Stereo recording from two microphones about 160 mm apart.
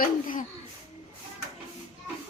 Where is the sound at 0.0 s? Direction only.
60° left (ahead or behind).